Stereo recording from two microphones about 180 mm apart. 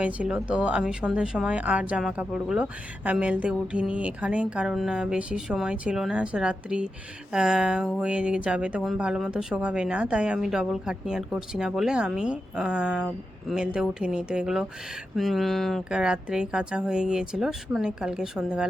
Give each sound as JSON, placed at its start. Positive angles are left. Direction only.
{"t": 0.0, "sound": "a woman's voice", "side_deg": -5}